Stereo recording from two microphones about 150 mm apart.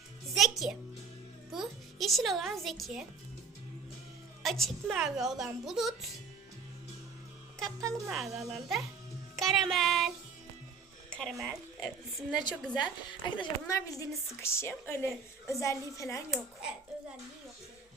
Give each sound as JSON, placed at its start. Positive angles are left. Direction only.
{"t": 0.3, "sound": "music", "side_deg": 0}
{"t": 1.5, "sound": "a woman's voice", "side_deg": 0}
{"t": 4.4, "sound": "a woman's voice", "side_deg": 0}
{"t": 7.9, "sound": "speech", "side_deg": -20}
{"t": 8.1, "sound": "a woman's voice", "side_deg": 0}
{"t": 9.3, "sound": "music", "side_deg": 0}
{"t": 11.1, "sound": "speech", "side_deg": 0}
{"t": 12.8, "sound": "a woman's voice", "side_deg": 30}
{"t": 16.3, "sound": "a woman's voice", "side_deg": -5}